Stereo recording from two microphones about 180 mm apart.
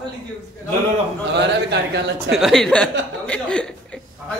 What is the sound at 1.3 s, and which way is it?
Speech, 75° right (ahead or behind).